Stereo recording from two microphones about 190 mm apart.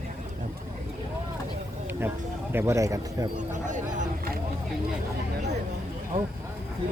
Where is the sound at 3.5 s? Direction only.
40° right (ahead or behind).